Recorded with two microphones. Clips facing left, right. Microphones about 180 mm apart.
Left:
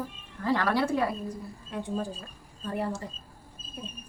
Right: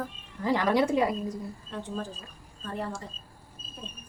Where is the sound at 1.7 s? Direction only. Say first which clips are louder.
Left 4 dB; 10° left (ahead or behind).